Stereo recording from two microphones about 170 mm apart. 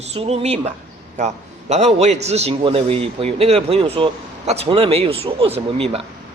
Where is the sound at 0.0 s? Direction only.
40° right (ahead or behind).